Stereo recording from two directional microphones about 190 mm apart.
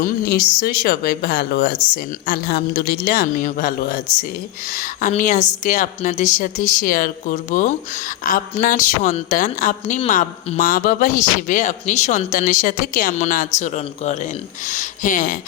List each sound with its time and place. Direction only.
0.0 s a woman's voice: 50° left (ahead or behind)